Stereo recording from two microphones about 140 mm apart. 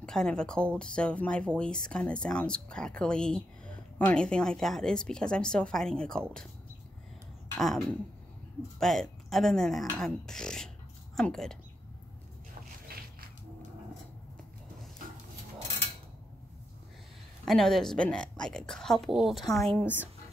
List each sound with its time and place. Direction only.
0.0 s speech: 5° left (ahead or behind)
7.5 s speech: centre (ahead or behind)
12.9 s a sound: 90° right
17.5 s speech: 5° left (ahead or behind)